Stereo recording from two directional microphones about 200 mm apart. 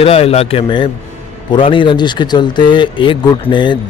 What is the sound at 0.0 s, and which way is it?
Speech, 30° left (ahead or behind).